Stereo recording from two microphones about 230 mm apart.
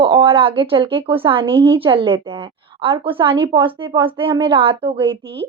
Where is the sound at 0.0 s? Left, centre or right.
Right.